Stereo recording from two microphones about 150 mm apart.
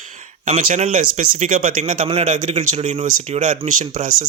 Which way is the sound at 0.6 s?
65° right (ahead or behind).